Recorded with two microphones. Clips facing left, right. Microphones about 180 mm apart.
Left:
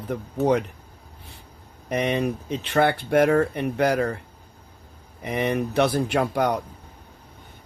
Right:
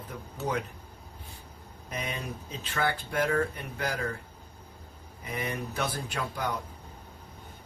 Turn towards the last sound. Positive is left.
turn(degrees=75)  # may be behind; listen again after turning